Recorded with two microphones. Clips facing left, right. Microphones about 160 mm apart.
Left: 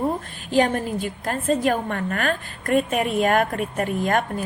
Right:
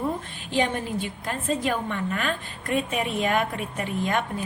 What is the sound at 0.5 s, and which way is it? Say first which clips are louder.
A woman's voice: left 5 dB; 45° left (ahead or behind).